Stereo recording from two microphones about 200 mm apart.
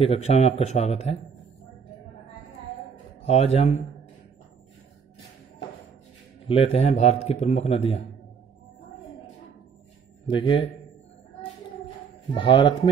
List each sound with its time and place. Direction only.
0.0 s speech: 30° left (ahead or behind)
3.2 s speech: 30° left (ahead or behind)
6.4 s speech: 30° left (ahead or behind)
10.2 s speech: 25° left (ahead or behind)
12.4 s speech: 25° left (ahead or behind)